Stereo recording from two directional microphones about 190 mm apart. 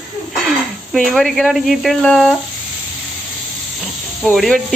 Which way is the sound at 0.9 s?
Centre (ahead or behind).